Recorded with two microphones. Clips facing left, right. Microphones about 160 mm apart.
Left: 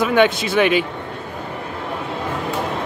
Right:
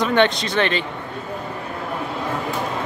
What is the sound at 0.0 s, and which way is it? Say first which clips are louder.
Speech: left 2 dB; 5° left (ahead or behind).